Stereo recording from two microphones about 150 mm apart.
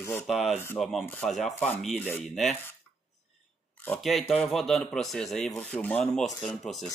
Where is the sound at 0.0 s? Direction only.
15° left (ahead or behind).